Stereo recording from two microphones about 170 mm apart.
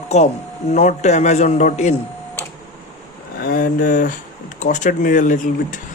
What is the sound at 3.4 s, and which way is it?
Speech, 55° left (ahead or behind).